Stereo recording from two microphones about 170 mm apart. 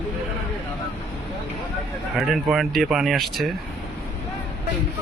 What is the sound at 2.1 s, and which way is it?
A man's voice, centre (ahead or behind).